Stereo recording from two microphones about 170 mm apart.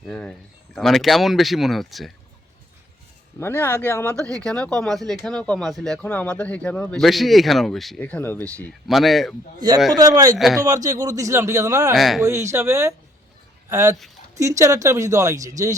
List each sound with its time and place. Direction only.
0.0 s speech: 5° left (ahead or behind)
3.4 s speech: 15° left (ahead or behind)
4.1 s speech: 20° right (ahead or behind)
4.4 s speech: 5° left (ahead or behind)
9.6 s speech: 25° right (ahead or behind)
10.3 s speech: centre (ahead or behind)
10.7 s speech: 20° right (ahead or behind)
11.9 s speech: centre (ahead or behind)
12.2 s speech: 15° right (ahead or behind)